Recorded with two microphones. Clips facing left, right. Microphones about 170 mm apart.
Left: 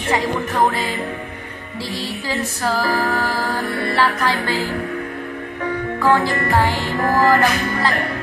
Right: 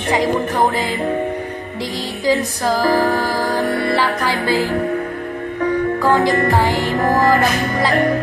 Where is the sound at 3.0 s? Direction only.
40° right (ahead or behind).